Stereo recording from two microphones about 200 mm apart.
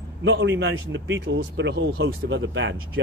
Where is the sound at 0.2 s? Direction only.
65° right (ahead or behind).